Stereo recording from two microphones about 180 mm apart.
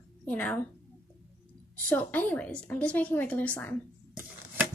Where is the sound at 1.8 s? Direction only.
10° left (ahead or behind).